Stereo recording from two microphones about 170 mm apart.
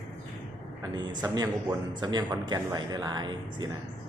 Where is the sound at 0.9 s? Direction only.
25° right (ahead or behind).